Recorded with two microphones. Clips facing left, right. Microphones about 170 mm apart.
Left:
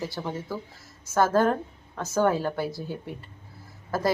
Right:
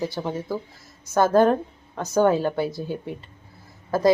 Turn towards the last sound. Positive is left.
turn(degrees=-20)  # may be behind; listen again after turning